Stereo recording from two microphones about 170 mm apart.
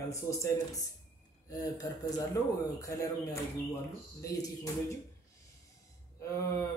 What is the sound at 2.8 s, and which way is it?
A man's voice, 20° left (ahead or behind).